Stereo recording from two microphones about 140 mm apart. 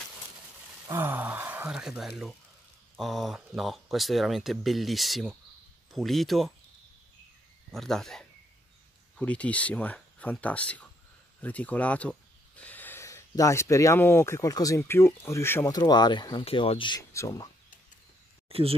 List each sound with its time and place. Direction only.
0.9 s speech: 15° right (ahead or behind)
7.7 s speech: 5° left (ahead or behind); by 17.0 s 35° left (ahead or behind)
17.1 s speech: 20° left (ahead or behind)
18.5 s speech: 45° right (ahead or behind)